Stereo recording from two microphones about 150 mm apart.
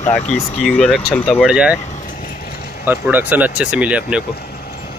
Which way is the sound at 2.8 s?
10° right (ahead or behind).